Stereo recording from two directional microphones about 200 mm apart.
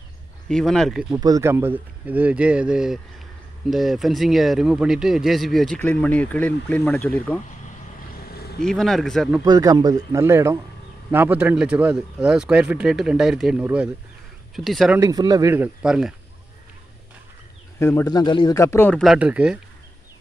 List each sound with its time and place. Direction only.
0.5 s speech: 5° left (ahead or behind)
1.1 s speech: 15° right (ahead or behind); by 7.3 s 5° left (ahead or behind)
8.2 s vehicle: 50° left (ahead or behind)
8.5 s speech: 5° left (ahead or behind)
9.4 s speech: 15° right (ahead or behind); by 15.0 s centre (ahead or behind)
15.0 s speech: 20° right (ahead or behind); by 16.2 s 5° right (ahead or behind)
17.7 s speech: 15° left (ahead or behind); by 19.6 s 5° right (ahead or behind)